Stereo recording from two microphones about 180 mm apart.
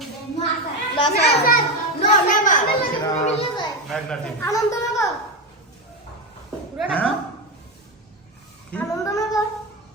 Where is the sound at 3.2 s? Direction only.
35° left (ahead or behind).